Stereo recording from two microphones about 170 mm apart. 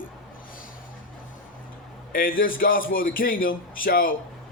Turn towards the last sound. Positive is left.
turn(degrees=55)  # may be behind; listen again after turning